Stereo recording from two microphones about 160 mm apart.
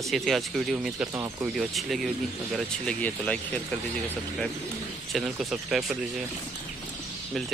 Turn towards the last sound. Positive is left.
turn(degrees=0)  # may be behind; listen again after turning